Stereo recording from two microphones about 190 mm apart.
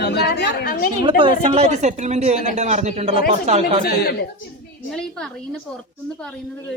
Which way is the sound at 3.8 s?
55° left (ahead or behind).